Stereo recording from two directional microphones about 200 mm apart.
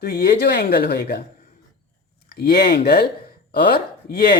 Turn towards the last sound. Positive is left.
turn(degrees=50)  # may be behind; listen again after turning